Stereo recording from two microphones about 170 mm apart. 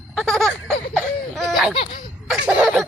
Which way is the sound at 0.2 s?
Centre (ahead or behind).